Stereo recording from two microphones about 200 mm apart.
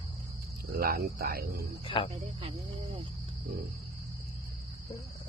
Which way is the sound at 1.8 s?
25° left (ahead or behind).